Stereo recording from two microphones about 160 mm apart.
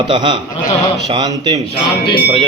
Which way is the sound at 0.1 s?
30° right (ahead or behind).